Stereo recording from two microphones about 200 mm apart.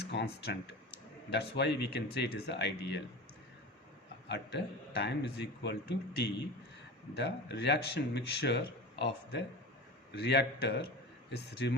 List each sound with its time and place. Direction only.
0.1 s speech: 60° left (ahead or behind)
4.3 s speech: 55° left (ahead or behind)